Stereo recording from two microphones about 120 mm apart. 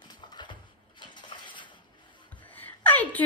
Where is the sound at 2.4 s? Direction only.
15° left (ahead or behind).